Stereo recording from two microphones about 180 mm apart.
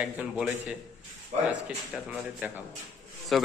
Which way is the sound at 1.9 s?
5° right (ahead or behind).